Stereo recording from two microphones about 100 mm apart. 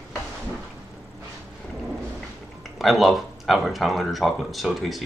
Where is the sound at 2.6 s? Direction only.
Centre (ahead or behind).